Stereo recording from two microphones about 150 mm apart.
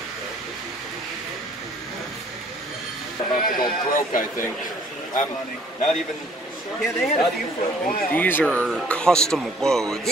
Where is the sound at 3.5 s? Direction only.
70° left (ahead or behind).